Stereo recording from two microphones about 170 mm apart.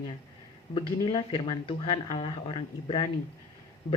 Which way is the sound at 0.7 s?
25° left (ahead or behind).